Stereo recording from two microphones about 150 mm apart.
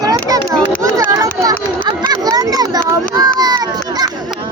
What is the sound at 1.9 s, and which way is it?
Children playing, 25° right (ahead or behind).